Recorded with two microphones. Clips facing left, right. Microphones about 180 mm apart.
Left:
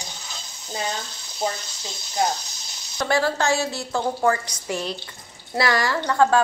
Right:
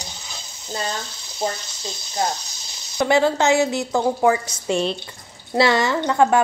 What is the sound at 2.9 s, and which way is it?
A woman's voice, 15° right (ahead or behind).